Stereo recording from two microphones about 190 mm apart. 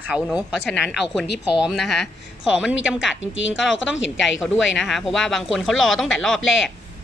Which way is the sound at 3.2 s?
85° left.